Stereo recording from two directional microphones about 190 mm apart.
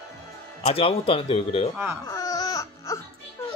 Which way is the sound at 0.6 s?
35° left (ahead or behind).